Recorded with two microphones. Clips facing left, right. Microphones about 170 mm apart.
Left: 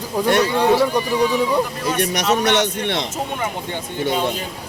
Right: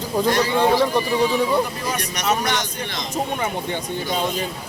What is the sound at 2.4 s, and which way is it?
Speech, 70° left (ahead or behind).